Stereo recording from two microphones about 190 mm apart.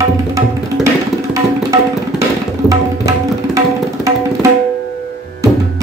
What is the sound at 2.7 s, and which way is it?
Tabla, 15° right (ahead or behind).